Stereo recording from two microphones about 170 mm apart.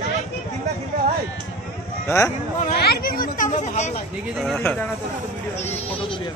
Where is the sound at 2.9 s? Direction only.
60° left (ahead or behind); by 4.0 s 45° left (ahead or behind).